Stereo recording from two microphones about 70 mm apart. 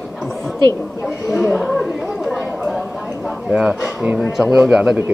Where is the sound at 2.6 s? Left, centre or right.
Centre.